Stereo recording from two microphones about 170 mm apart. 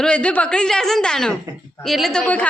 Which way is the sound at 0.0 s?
5° left (ahead or behind).